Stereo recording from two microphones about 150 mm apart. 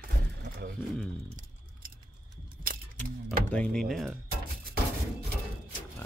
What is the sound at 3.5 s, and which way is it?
Speech, 5° left (ahead or behind).